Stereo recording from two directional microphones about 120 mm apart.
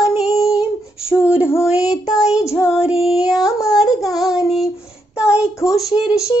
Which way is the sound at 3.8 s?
Centre (ahead or behind).